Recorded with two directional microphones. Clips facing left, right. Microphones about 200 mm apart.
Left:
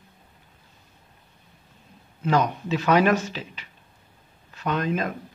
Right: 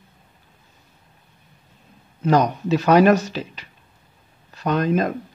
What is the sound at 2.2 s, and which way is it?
Speech, 40° right (ahead or behind).